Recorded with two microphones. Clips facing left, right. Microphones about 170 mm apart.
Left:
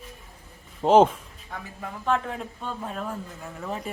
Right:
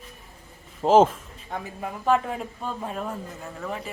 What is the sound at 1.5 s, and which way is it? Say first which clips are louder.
Speech: right 5 dB; 25° right (ahead or behind).